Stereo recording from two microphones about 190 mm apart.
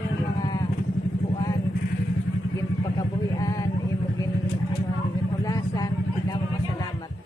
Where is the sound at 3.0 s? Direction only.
20° left (ahead or behind).